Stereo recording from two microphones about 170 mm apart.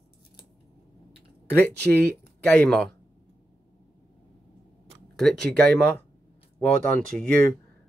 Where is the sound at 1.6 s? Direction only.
10° left (ahead or behind).